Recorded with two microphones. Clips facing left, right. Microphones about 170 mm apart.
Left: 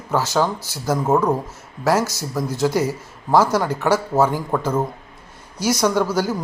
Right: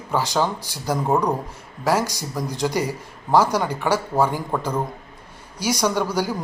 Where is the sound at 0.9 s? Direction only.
5° left (ahead or behind).